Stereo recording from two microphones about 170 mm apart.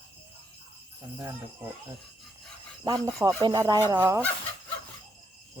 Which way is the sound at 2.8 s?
20° right (ahead or behind).